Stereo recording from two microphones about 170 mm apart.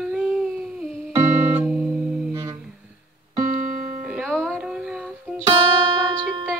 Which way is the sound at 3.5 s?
50° right (ahead or behind).